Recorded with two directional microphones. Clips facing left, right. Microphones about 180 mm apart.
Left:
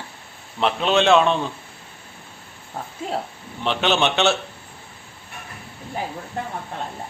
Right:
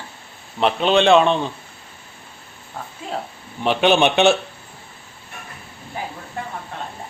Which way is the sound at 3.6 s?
10° right (ahead or behind).